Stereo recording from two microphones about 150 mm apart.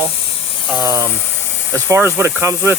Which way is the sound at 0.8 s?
20° right (ahead or behind).